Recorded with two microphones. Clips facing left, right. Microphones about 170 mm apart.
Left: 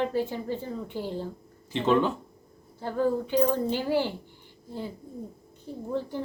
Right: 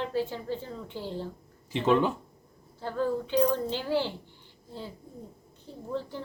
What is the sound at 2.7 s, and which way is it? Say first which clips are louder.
A woman's voice: left 3 dB; 15° left (ahead or behind).